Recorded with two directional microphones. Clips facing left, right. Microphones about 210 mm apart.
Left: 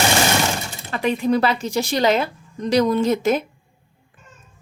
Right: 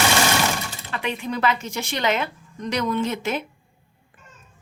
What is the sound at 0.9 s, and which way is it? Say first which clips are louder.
Speech: left 9 dB; 40° left (ahead or behind).